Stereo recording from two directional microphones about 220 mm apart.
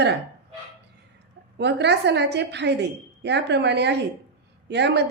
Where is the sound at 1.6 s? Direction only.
50° right (ahead or behind).